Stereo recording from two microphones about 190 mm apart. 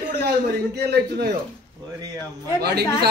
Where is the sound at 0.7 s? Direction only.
60° right (ahead or behind).